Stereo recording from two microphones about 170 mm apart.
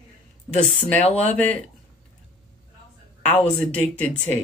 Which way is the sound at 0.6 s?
40° left (ahead or behind).